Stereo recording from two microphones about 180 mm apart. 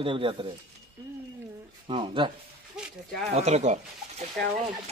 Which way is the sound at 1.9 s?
30° right (ahead or behind).